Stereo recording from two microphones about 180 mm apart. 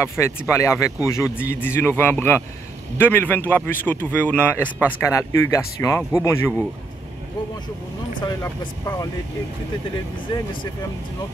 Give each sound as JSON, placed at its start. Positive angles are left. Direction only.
{"t": 0.0, "sound": "speech", "side_deg": 15}
{"t": 8.2, "sound": "speech", "side_deg": 20}
{"t": 10.2, "sound": "speech", "side_deg": 25}